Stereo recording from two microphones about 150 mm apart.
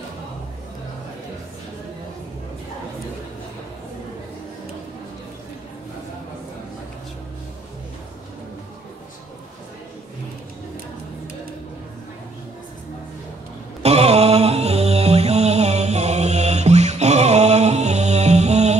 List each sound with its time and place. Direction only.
13.8 s mantra: 45° right (ahead or behind)